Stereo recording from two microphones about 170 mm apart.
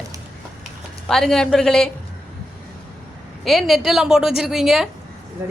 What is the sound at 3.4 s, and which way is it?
A woman's voice, centre (ahead or behind).